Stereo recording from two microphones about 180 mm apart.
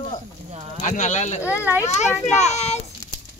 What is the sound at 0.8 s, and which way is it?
Speech, 45° left (ahead or behind).